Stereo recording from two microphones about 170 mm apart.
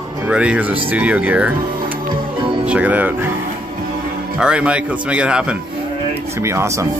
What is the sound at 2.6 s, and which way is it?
Speech, 10° right (ahead or behind).